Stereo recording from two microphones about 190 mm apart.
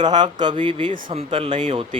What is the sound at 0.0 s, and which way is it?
Speech, 25° right (ahead or behind).